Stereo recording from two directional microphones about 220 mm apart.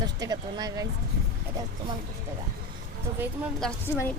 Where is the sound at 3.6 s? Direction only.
Centre (ahead or behind).